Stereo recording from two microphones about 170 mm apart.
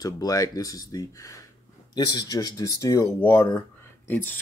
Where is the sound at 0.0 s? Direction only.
20° left (ahead or behind).